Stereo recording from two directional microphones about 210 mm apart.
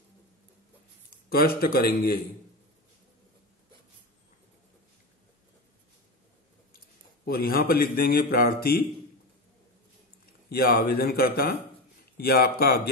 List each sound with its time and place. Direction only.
1.3 s a man's voice: 45° left (ahead or behind)
7.2 s a man's voice: 45° left (ahead or behind)
10.5 s a man's voice: 45° left (ahead or behind)